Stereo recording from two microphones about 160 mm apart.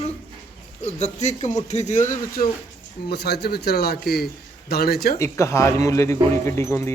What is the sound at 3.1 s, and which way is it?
A man's voice, 90° left.